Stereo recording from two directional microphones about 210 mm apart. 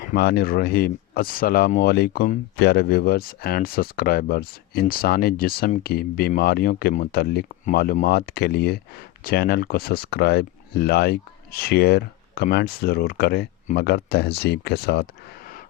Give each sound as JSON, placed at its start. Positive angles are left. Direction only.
{"t": 0.0, "sound": "speech", "side_deg": 45}